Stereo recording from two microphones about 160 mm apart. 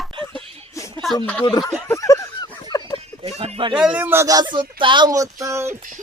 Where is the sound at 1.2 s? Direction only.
10° left (ahead or behind).